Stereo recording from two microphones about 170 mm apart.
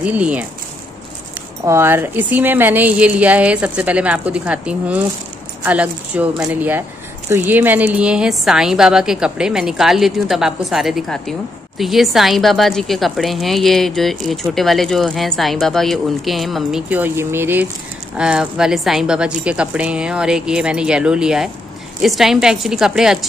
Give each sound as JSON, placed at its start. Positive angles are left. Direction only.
{"t": 0.0, "sound": "a woman's voice", "side_deg": -10}
{"t": 1.6, "sound": "a woman's voice", "side_deg": -15}
{"t": 16.9, "sound": "a woman's voice", "side_deg": -15}